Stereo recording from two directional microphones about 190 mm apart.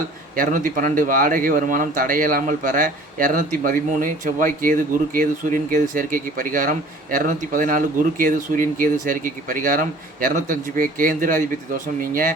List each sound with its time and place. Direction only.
0.3 s a man's voice: 45° right (ahead or behind)